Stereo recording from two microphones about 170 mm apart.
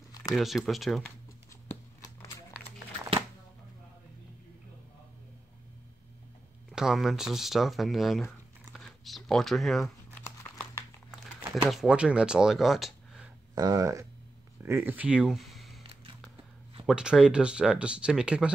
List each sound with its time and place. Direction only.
0.1 s a sound: 20° left (ahead or behind)
0.4 s speech: centre (ahead or behind)
1.7 s a sound: 10° left (ahead or behind)
6.7 s speech: 5° right (ahead or behind)
10.2 s crumpling: 15° left (ahead or behind)
11.7 s speech: 5° right (ahead or behind)
13.6 s speech: 20° right (ahead or behind); by 15.8 s centre (ahead or behind)
15.8 s music: 35° right (ahead or behind)
16.8 s speech: 5° right (ahead or behind)